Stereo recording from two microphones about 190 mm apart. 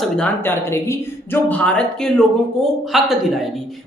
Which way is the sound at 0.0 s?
10° left (ahead or behind).